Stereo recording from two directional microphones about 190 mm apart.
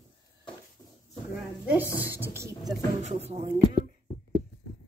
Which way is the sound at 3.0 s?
35° right (ahead or behind).